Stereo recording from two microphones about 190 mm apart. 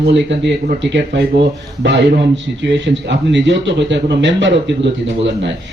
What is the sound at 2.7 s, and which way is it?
A man's voice, 65° right (ahead or behind).